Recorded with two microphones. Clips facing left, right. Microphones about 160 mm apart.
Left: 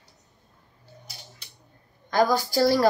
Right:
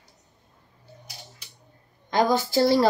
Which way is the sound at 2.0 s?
20° right (ahead or behind).